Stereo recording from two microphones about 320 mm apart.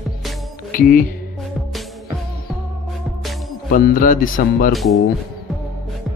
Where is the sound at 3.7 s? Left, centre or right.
Left.